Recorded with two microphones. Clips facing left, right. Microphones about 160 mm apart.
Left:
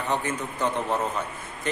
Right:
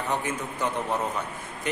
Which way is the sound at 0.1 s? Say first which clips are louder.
Left 3 dB; 10° right (ahead or behind).